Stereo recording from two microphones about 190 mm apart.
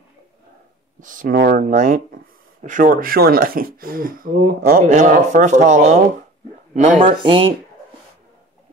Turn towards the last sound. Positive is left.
turn(degrees=-30)  # may be behind; listen again after turning